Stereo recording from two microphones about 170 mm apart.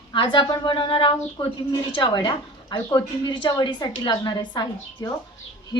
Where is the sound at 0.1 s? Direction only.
30° left (ahead or behind).